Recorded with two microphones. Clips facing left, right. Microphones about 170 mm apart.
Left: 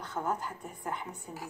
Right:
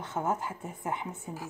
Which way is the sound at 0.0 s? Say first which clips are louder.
Right 3 dB; 20° right (ahead or behind).